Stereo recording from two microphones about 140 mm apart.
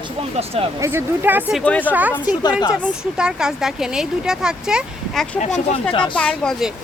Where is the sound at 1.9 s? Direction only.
10° right (ahead or behind).